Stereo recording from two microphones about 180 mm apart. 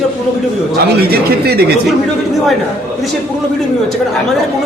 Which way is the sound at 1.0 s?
60° right (ahead or behind).